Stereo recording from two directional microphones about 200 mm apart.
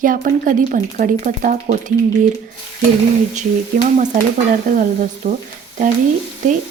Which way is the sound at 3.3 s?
40° right (ahead or behind).